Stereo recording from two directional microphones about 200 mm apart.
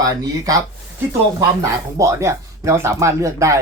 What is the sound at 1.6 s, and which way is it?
Speech, 15° right (ahead or behind).